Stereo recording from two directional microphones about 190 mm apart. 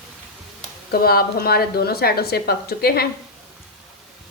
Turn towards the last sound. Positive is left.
turn(degrees=55)  # may be behind; listen again after turning